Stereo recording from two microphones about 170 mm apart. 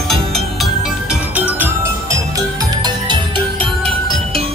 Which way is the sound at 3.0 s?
25° right (ahead or behind).